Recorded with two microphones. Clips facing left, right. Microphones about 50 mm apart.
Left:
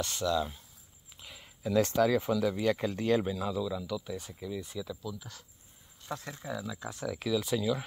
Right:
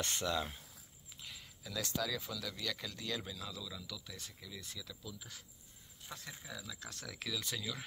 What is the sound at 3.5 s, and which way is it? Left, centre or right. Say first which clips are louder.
Speech: left 14 dB; left.